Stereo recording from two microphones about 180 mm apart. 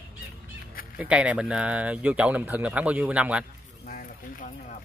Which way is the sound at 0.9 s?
5° right (ahead or behind).